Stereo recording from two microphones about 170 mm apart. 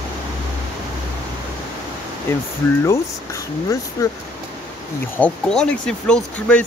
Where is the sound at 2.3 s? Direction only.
15° left (ahead or behind).